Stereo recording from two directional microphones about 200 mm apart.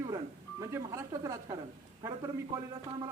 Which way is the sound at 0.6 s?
15° right (ahead or behind).